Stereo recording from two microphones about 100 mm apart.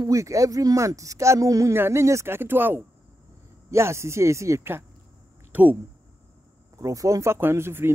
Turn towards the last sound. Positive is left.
turn(degrees=-25)  # may be behind; listen again after turning